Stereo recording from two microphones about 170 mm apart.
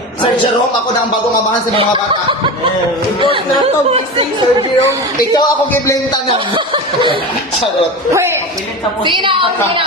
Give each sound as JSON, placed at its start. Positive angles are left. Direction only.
{"t": 3.9, "sound": "speech", "side_deg": -35}
{"t": 4.9, "sound": "speech", "side_deg": 20}
{"t": 9.0, "sound": "a woman's voice", "side_deg": -30}